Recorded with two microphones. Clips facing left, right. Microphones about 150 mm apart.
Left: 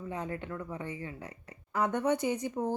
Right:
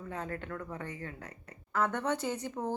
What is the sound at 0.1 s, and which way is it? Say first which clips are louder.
Speech: left 1 dB; 15° left (ahead or behind).